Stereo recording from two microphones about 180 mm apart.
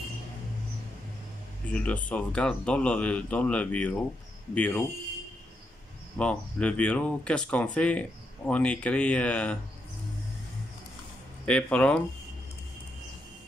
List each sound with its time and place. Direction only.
1.7 s speech: 5° left (ahead or behind)
6.1 s speech: 5° left (ahead or behind)
11.4 s speech: 5° left (ahead or behind)